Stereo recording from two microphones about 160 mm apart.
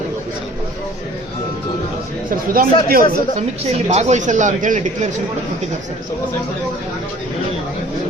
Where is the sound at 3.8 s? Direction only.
45° right (ahead or behind).